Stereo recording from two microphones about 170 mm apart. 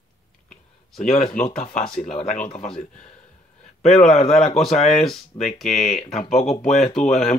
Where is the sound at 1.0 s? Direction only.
40° left (ahead or behind).